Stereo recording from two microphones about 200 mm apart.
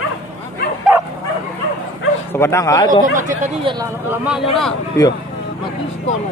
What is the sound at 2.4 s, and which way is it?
Speech, 15° left (ahead or behind).